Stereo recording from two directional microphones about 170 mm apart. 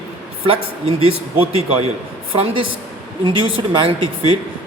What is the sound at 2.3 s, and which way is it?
A woman's voice, 30° right (ahead or behind).